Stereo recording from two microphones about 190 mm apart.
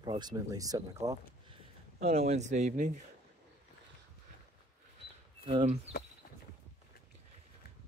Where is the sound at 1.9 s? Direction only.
35° right (ahead or behind).